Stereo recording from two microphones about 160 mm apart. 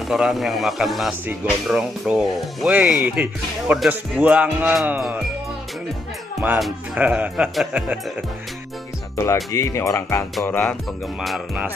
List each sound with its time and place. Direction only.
0.1 s a man's voice: centre (ahead or behind)
6.6 s speech: 5° right (ahead or behind)
9.1 s speech: 20° left (ahead or behind)
11.1 s a man's voice: centre (ahead or behind)